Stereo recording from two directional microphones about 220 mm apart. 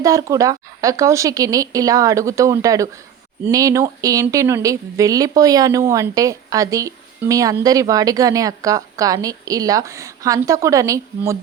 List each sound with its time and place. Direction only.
0.0 s speech: 15° right (ahead or behind)